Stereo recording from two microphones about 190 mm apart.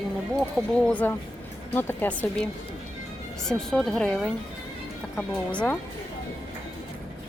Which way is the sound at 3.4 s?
Centre (ahead or behind).